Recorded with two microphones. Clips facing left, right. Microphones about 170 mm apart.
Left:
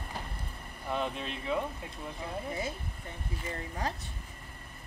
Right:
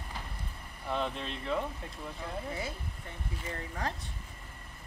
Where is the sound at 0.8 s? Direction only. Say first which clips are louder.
Even; 10° left (ahead or behind).